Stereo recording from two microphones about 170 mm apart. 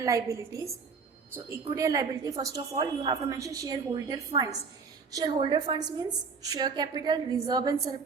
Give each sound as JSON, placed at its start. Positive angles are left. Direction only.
{"t": 0.0, "sound": "a woman's voice", "side_deg": -20}